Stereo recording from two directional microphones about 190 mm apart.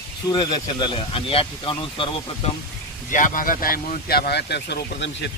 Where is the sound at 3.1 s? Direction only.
45° left (ahead or behind).